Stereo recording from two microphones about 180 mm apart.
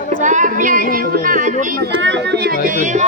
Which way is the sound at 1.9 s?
85° right.